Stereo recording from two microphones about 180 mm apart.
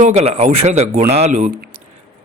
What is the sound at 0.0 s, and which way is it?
Speech, 35° right (ahead or behind).